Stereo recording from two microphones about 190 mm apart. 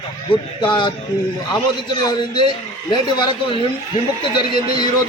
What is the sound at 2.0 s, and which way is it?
A man's voice, 25° left (ahead or behind).